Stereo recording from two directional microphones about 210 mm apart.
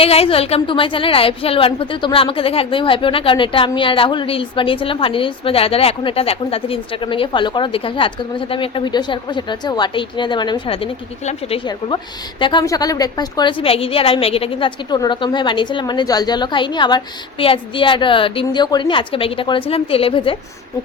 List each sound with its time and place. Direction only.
0.0 s a woman's voice: 25° left (ahead or behind)